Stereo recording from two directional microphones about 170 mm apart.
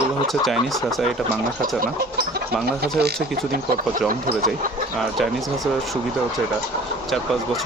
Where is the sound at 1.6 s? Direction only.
60° right (ahead or behind).